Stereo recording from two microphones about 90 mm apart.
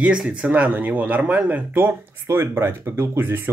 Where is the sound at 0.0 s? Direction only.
10° right (ahead or behind).